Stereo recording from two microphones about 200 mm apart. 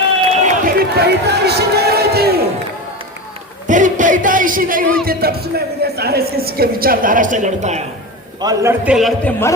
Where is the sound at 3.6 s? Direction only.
40° right (ahead or behind).